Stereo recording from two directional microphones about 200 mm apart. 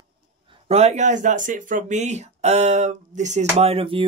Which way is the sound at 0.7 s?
30° right (ahead or behind).